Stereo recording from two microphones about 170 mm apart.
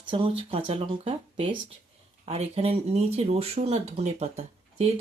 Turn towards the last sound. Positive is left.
turn(degrees=-40)  # may be behind; listen again after turning